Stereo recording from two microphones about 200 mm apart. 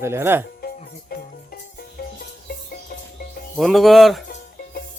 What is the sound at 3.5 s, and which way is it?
Speech, centre (ahead or behind).